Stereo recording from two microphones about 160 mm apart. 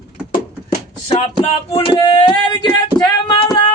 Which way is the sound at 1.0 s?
40° left (ahead or behind).